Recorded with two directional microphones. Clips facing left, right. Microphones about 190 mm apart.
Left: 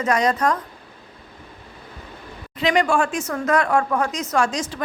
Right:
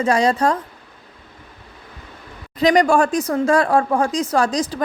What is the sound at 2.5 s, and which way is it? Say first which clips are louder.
A woman's voice: right 5 dB; 40° right (ahead or behind).